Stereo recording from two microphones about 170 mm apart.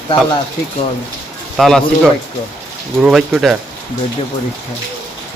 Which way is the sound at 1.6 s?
Centre (ahead or behind).